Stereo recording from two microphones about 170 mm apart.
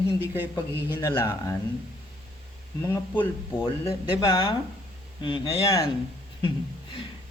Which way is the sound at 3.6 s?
30° left (ahead or behind).